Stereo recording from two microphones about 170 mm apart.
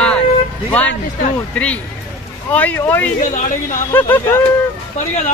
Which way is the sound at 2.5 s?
10° left (ahead or behind).